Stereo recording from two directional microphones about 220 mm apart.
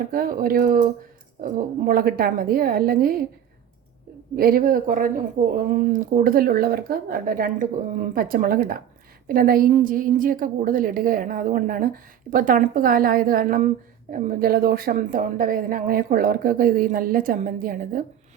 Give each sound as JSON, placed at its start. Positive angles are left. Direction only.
{"t": 0.1, "sound": "a woman's voice", "side_deg": -40}
{"t": 4.4, "sound": "a woman's voice", "side_deg": -40}